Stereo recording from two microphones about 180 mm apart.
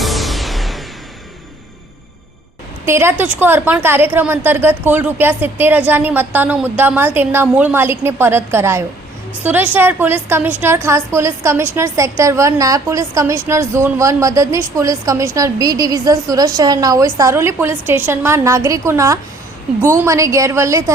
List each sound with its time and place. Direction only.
0.0 s music: centre (ahead or behind)
2.8 s a woman's voice: 15° right (ahead or behind)